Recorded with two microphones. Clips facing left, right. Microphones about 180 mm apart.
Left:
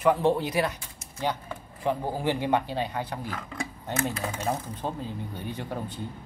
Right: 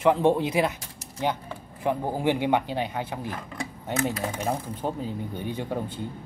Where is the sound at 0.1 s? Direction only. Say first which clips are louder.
Right 2 dB; 20° right (ahead or behind).